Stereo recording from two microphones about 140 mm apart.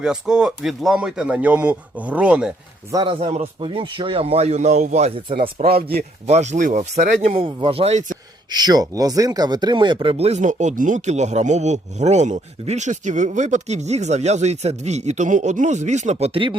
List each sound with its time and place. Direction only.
0.0 s speech: 5° right (ahead or behind)
2.9 s speech: 35° right (ahead or behind)
3.2 s speech: 50° right (ahead or behind)
5.6 s speech: 90° right
6.2 s speech: 55° right (ahead or behind)
7.3 s speech: 40° right (ahead or behind)
8.4 s speech: 30° right (ahead or behind); by 16.3 s 55° right (ahead or behind)
16.3 s speech: 35° right (ahead or behind)